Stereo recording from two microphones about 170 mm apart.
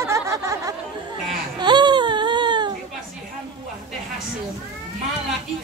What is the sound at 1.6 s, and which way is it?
Baby cry, 25° right (ahead or behind).